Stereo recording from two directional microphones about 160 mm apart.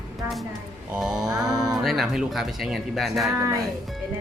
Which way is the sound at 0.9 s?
5° right (ahead or behind).